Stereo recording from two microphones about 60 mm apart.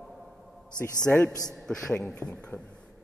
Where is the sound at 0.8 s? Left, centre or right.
Right.